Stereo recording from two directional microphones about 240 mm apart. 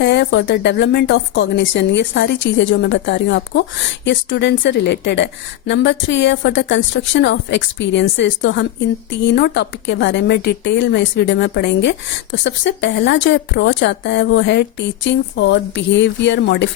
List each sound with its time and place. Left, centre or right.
0.0 s a woman's voice: left